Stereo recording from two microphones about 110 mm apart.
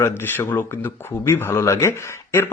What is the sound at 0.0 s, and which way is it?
Speech, 20° left (ahead or behind).